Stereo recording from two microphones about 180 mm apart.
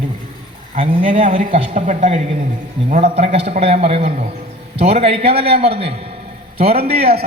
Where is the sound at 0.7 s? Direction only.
30° right (ahead or behind).